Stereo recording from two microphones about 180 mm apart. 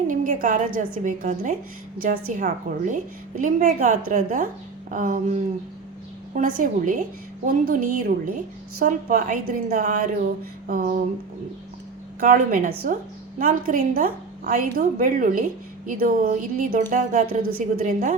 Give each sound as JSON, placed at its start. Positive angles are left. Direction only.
{"t": 0.1, "sound": "a woman's voice", "side_deg": -50}
{"t": 12.2, "sound": "a woman's voice", "side_deg": -50}